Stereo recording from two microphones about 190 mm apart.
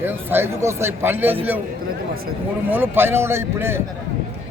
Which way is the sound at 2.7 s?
10° right (ahead or behind).